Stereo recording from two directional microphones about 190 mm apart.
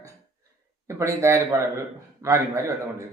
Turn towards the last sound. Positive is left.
turn(degrees=-15)  # may be behind; listen again after turning